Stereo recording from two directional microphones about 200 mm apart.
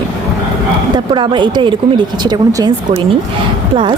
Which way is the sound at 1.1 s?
25° right (ahead or behind).